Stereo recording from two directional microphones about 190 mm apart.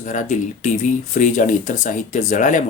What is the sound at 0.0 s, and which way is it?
Speech, 40° left (ahead or behind).